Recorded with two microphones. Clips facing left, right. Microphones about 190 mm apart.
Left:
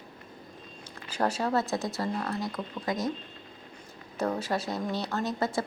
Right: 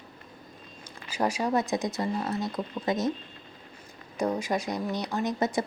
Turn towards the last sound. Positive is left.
turn(degrees=-20)  # may be behind; listen again after turning